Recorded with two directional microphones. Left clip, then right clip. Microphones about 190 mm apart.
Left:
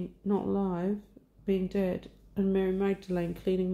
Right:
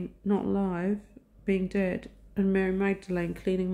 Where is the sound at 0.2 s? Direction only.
15° right (ahead or behind).